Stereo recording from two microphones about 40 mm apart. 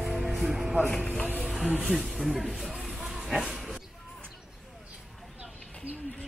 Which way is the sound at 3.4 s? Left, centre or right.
Centre.